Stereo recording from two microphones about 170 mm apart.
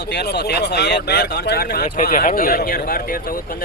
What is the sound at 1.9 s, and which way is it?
Speech, 55° left (ahead or behind).